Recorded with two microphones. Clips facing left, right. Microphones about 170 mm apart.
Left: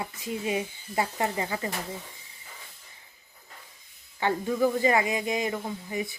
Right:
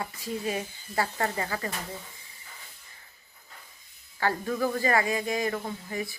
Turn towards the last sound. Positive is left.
turn(degrees=15)  # may be behind; listen again after turning